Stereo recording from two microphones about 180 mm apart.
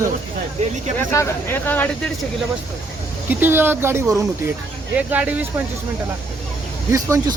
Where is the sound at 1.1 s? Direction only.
10° left (ahead or behind).